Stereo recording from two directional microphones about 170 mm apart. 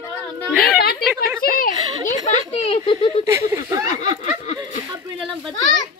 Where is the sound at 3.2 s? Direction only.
15° right (ahead or behind).